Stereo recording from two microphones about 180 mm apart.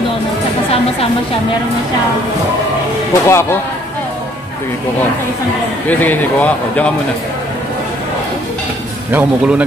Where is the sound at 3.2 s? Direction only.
15° left (ahead or behind).